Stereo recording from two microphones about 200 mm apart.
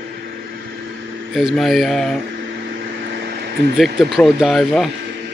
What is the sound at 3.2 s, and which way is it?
Vehicle, 50° right (ahead or behind).